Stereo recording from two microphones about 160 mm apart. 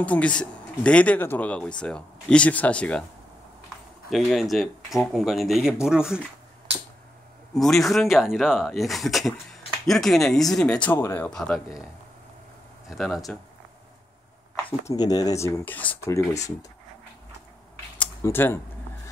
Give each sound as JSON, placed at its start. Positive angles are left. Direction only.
{"t": 0.0, "sound": "speech", "side_deg": 10}
{"t": 4.1, "sound": "speech", "side_deg": 0}
{"t": 7.5, "sound": "speech", "side_deg": 0}
{"t": 11.3, "sound": "speech", "side_deg": 5}
{"t": 12.8, "sound": "speech", "side_deg": 0}
{"t": 14.9, "sound": "speech", "side_deg": 25}
{"t": 18.2, "sound": "speech", "side_deg": 15}